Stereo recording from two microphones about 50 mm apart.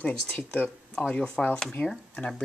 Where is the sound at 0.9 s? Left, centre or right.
Centre.